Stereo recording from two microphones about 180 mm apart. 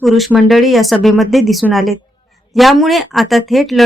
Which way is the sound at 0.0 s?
Centre (ahead or behind).